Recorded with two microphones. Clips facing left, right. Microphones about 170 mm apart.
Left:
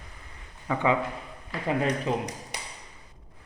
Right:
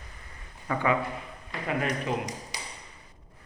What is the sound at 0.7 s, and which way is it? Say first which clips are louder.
Speech: left 2 dB; 20° left (ahead or behind).